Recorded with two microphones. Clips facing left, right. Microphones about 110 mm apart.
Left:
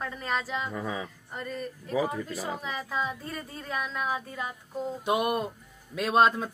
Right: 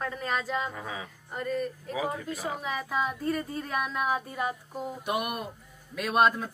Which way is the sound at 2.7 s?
5° right (ahead or behind).